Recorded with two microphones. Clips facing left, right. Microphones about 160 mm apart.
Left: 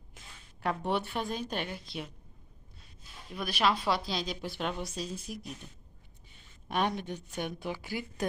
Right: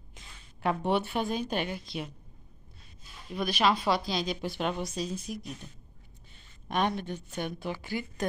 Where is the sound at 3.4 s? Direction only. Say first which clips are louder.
Right 3 dB; centre (ahead or behind).